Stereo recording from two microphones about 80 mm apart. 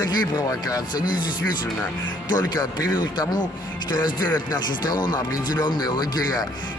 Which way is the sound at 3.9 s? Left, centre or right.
Left.